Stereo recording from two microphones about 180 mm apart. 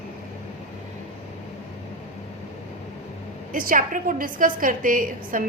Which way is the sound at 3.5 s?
50° right (ahead or behind).